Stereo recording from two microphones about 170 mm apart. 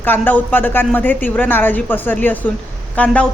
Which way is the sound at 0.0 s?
10° left (ahead or behind).